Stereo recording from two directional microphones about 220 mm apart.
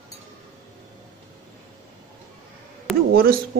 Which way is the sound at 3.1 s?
40° right (ahead or behind).